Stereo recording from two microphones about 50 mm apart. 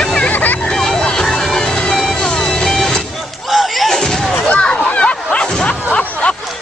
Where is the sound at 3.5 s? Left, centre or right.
Centre.